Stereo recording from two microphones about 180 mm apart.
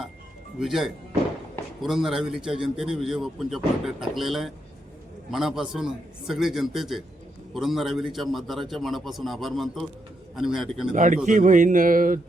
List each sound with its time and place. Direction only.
0.6 s a man's voice: centre (ahead or behind)
10.9 s speech: 45° right (ahead or behind)